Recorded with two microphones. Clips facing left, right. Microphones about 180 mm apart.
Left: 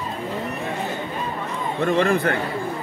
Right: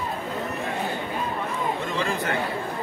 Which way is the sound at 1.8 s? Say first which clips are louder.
Left 8 dB; 60° left (ahead or behind).